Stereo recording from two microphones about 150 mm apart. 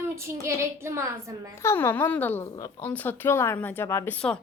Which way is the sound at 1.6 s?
15° left (ahead or behind).